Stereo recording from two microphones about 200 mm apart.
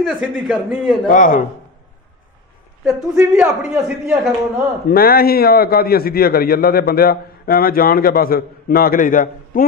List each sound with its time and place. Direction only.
0.0 s a man's voice: centre (ahead or behind)
1.0 s speech: 40° left (ahead or behind)
2.8 s a man's voice: 10° right (ahead or behind)
4.8 s a man's voice: 50° left (ahead or behind)